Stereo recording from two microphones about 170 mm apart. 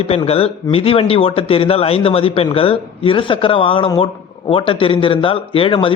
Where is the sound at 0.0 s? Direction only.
35° left (ahead or behind).